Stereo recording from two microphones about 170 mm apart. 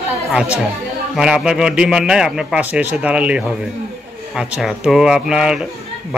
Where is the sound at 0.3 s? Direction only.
5° right (ahead or behind).